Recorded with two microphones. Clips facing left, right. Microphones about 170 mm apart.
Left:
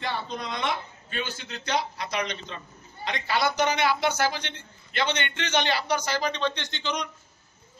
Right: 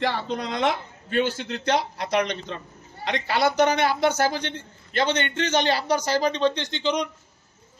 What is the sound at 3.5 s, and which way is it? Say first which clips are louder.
A man's voice: right 4 dB; 50° right (ahead or behind).